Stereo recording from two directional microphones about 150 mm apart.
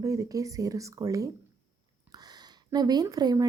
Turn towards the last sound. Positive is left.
turn(degrees=-25)  # may be behind; listen again after turning